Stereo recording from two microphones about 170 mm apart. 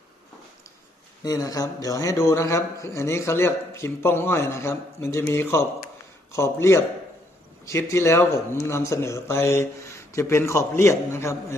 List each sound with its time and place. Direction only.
1.2 s a man's voice: 20° left (ahead or behind)